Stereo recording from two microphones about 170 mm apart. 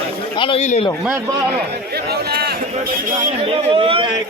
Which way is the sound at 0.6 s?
40° left (ahead or behind).